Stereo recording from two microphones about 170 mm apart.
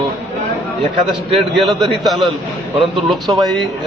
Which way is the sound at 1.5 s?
Centre (ahead or behind).